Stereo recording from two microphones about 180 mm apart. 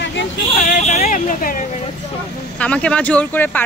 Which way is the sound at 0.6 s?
40° left (ahead or behind).